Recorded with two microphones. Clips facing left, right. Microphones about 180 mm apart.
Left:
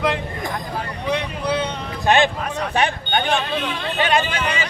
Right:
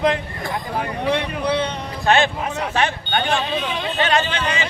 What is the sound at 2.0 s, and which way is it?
A man's voice, 15° left (ahead or behind).